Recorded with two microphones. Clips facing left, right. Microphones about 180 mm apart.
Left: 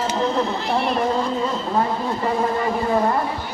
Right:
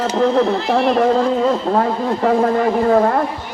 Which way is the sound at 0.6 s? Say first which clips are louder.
Right 6 dB; 90° right.